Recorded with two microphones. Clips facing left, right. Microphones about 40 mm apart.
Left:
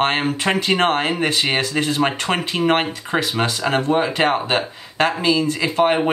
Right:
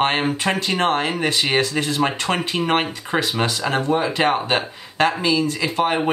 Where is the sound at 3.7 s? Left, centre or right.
Left.